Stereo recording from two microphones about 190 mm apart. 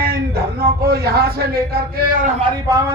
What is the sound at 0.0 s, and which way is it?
Speech, 55° right (ahead or behind).